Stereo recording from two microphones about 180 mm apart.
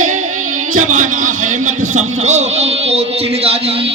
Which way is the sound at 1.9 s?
40° right (ahead or behind).